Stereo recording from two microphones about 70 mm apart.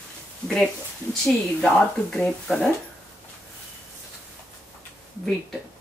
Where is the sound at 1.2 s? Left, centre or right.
Centre.